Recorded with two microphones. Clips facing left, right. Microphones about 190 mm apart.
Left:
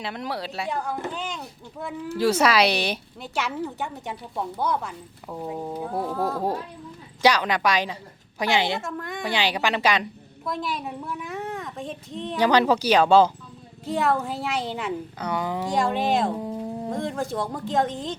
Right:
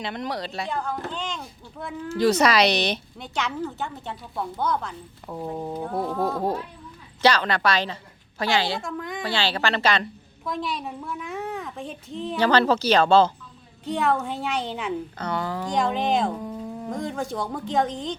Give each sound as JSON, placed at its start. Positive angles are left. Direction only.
{"t": 0.0, "sound": "a woman's voice", "side_deg": 5}
{"t": 8.8, "sound": "a woman's voice", "side_deg": 0}
{"t": 9.2, "sound": "a woman's voice", "side_deg": 15}
{"t": 12.4, "sound": "a woman's voice", "side_deg": 15}
{"t": 15.6, "sound": "a woman's voice", "side_deg": 0}
{"t": 16.4, "sound": "a sound", "side_deg": 25}
{"t": 16.9, "sound": "a woman's voice", "side_deg": 0}